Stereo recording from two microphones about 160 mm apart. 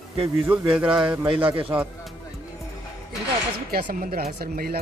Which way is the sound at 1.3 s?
35° right (ahead or behind).